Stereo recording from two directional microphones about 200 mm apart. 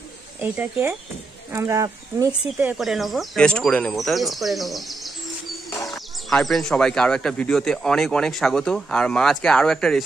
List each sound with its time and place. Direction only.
0.4 s speech: 10° right (ahead or behind)
2.5 s speech: 5° right (ahead or behind)